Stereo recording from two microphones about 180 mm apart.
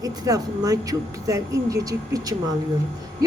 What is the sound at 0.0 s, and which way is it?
Speech, 20° right (ahead or behind).